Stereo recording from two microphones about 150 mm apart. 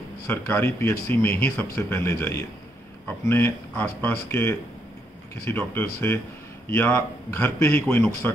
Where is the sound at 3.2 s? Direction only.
15° left (ahead or behind).